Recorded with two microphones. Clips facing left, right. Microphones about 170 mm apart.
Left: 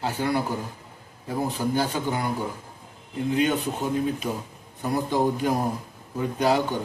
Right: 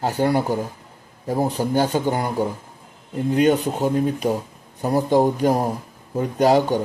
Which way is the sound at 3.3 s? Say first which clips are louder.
Right 6 dB; 45° right (ahead or behind).